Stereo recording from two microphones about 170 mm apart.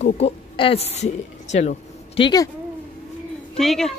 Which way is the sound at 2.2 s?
25° left (ahead or behind).